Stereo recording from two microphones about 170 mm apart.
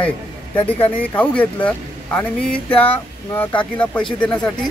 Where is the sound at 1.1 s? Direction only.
10° left (ahead or behind).